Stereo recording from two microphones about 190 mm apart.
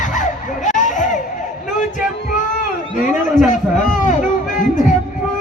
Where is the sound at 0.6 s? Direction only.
40° left (ahead or behind).